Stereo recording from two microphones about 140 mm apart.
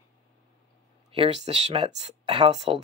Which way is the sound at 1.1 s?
45° right (ahead or behind).